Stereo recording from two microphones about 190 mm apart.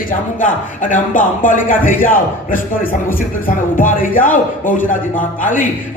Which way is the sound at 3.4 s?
45° left (ahead or behind).